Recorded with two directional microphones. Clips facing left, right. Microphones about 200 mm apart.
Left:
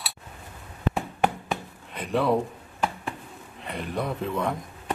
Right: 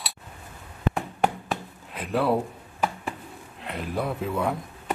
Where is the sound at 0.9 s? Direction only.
Centre (ahead or behind).